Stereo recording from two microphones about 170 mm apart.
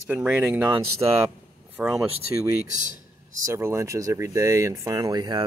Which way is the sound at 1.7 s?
5° right (ahead or behind).